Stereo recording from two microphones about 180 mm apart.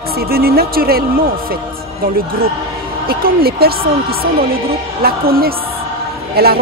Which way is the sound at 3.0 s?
55° right (ahead or behind).